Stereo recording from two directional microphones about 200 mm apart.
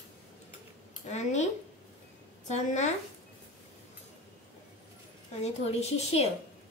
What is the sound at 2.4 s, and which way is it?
Speech, 35° left (ahead or behind).